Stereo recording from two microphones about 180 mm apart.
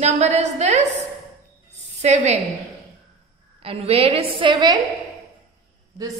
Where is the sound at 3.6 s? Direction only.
30° right (ahead or behind).